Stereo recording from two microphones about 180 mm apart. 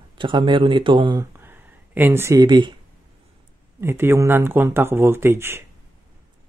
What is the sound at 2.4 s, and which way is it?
Speech, 25° right (ahead or behind).